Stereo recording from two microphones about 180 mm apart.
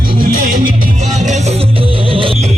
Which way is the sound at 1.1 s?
40° right (ahead or behind).